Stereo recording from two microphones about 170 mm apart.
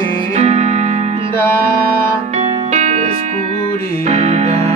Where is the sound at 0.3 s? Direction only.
40° right (ahead or behind).